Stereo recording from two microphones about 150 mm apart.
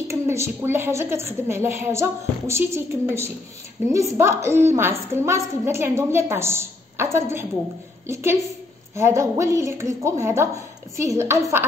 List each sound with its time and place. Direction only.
0.1 s a woman's voice: 20° right (ahead or behind)